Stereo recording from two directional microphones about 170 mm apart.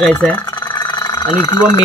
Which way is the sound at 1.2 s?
30° left (ahead or behind).